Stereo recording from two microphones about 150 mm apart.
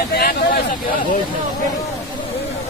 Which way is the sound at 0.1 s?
90° left.